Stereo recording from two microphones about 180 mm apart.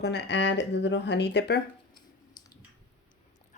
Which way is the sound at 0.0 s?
70° left (ahead or behind).